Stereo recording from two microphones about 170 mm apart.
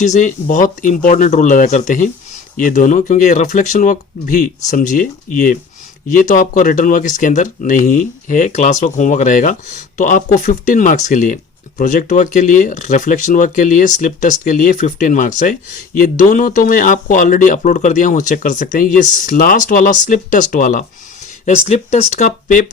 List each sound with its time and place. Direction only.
0.0 s speech: 45° left (ahead or behind)
21.4 s speech: 40° left (ahead or behind)